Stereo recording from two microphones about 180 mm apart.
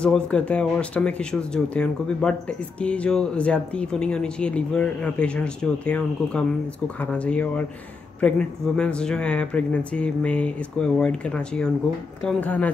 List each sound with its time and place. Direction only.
0.0 s speech: 5° left (ahead or behind)